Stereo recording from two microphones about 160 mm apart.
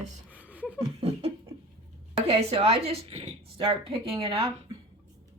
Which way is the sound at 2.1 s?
40° right (ahead or behind).